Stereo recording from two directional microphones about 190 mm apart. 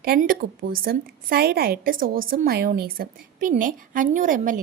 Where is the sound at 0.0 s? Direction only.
50° right (ahead or behind).